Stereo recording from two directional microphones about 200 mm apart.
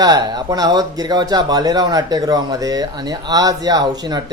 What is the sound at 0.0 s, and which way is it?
Speech, 20° right (ahead or behind).